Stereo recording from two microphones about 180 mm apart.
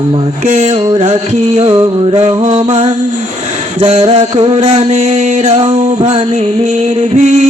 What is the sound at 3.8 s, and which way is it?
Mantra, 30° right (ahead or behind).